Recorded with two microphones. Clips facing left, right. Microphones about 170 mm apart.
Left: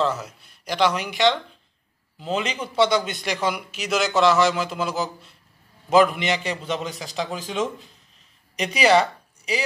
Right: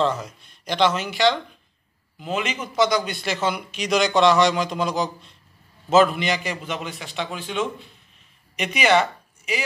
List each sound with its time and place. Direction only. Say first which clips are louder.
0.0 s a man's voice: right 1 dB; 5° left (ahead or behind)
2.1 s a man's voice: left 1 dB; 30° left (ahead or behind)